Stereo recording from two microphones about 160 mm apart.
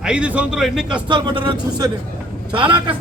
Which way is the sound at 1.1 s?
30° right (ahead or behind).